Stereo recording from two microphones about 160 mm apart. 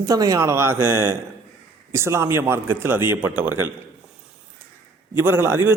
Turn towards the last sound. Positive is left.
turn(degrees=-15)  # may be behind; listen again after turning